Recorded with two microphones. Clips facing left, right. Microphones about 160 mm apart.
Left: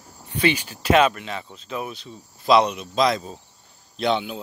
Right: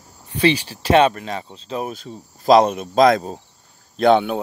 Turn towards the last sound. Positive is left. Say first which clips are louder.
# right 8 dB
turn(degrees=-55)  # may be behind; listen again after turning